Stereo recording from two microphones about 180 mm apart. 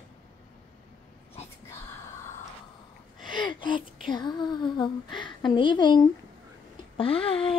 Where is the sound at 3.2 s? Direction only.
25° left (ahead or behind).